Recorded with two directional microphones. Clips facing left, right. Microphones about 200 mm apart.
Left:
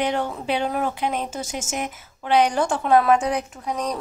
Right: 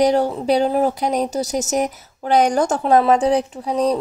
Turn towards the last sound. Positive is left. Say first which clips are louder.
# right 8 dB
turn(degrees=-30)  # may be behind; listen again after turning